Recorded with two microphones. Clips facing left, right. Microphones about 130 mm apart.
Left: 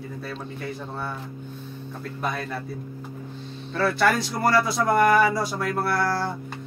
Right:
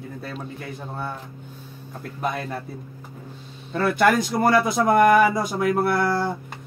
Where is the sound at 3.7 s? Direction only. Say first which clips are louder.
Right 3 dB; 15° right (ahead or behind).